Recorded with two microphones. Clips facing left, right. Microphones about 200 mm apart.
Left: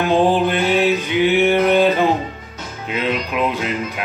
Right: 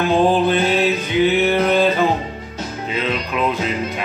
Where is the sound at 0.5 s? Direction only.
15° left (ahead or behind).